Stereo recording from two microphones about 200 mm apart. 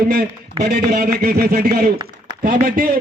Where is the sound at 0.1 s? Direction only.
50° right (ahead or behind).